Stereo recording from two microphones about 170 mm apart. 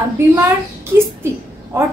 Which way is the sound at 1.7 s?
15° right (ahead or behind).